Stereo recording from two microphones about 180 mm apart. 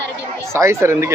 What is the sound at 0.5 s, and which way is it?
Speech, 15° right (ahead or behind).